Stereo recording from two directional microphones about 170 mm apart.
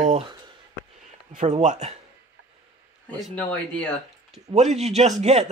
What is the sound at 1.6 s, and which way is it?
Speech, 45° right (ahead or behind).